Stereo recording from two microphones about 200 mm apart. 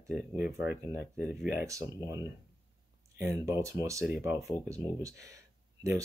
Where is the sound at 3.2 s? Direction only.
15° right (ahead or behind).